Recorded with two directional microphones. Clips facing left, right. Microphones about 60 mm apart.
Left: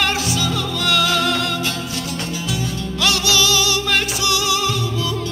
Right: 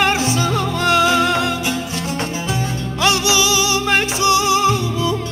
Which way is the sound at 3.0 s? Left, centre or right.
Right.